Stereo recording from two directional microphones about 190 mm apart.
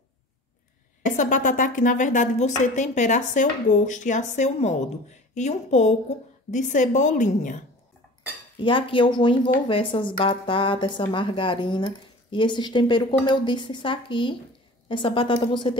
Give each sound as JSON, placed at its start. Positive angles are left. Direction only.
{"t": 1.0, "sound": "a woman's voice", "side_deg": 40}
{"t": 8.6, "sound": "speech", "side_deg": 25}